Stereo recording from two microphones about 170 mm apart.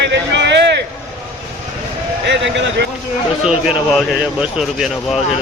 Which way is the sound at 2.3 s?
90° right.